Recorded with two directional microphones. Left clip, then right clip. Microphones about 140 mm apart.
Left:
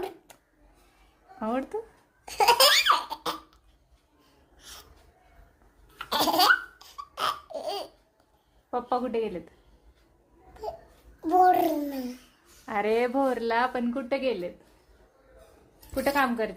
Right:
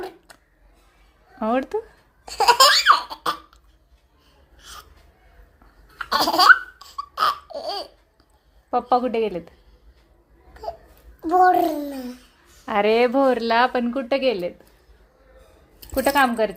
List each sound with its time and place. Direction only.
1.4 s a woman's voice: 35° right (ahead or behind)
2.2 s laughter: 15° left (ahead or behind)
4.5 s a sound: 10° left (ahead or behind)
6.0 s laughter: 15° left (ahead or behind)
8.7 s a woman's voice: 30° right (ahead or behind)
10.5 s a sound: 10° left (ahead or behind)
12.6 s a woman's voice: 40° right (ahead or behind)
16.0 s a woman's voice: 30° right (ahead or behind)